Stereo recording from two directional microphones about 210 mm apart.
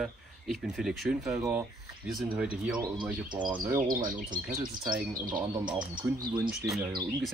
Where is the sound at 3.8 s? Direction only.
40° right (ahead or behind).